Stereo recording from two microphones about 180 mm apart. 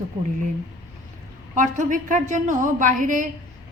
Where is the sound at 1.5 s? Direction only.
45° right (ahead or behind).